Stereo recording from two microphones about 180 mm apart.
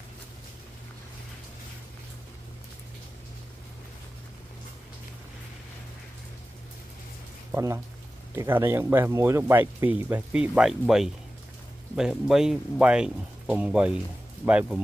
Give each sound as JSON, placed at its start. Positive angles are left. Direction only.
{"t": 7.5, "sound": "speech", "side_deg": -15}